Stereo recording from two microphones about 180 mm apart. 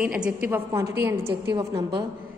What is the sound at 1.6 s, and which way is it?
Speech, 30° right (ahead or behind).